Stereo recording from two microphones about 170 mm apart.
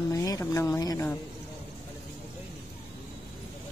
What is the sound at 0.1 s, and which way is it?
Speech, 20° left (ahead or behind).